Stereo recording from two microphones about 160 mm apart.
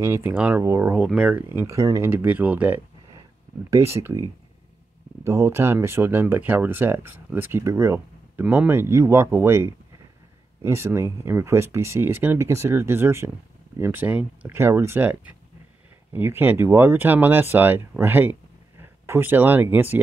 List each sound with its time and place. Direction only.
0.0 s speech: 15° right (ahead or behind)
0.9 s speech: 5° right (ahead or behind)